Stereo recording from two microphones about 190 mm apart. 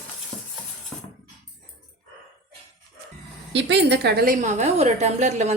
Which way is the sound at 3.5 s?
70° right (ahead or behind).